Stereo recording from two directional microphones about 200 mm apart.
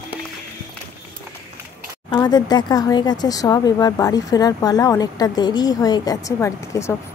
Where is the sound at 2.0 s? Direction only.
20° left (ahead or behind).